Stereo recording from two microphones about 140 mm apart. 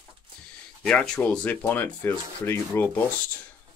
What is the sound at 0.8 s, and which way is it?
Speech, 5° left (ahead or behind).